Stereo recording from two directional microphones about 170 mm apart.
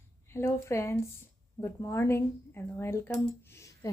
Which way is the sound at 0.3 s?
15° left (ahead or behind).